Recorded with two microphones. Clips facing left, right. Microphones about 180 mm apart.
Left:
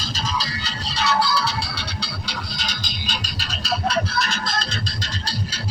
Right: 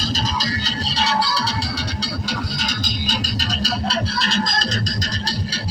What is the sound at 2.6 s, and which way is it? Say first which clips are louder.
Music: right 6 dB; 45° right (ahead or behind).